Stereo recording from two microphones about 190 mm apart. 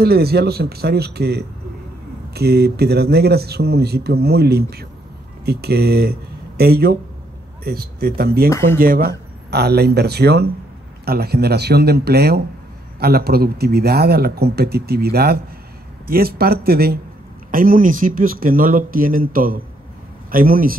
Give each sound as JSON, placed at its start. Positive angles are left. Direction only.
{"t": 0.0, "sound": "speech", "side_deg": -55}